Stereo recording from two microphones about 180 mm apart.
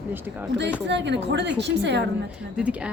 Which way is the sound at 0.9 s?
75° right (ahead or behind).